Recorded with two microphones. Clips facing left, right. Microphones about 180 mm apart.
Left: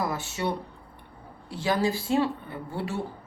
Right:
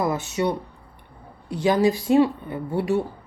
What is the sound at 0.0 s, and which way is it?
Speech, 20° right (ahead or behind).